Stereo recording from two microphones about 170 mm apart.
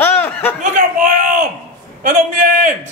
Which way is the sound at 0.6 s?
50° right (ahead or behind).